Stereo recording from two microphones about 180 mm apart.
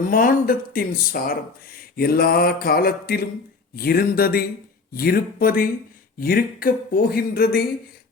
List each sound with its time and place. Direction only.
0.0 s speech: 50° left (ahead or behind)